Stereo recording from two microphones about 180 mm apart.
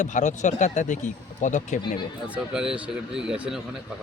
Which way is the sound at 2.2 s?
5° right (ahead or behind).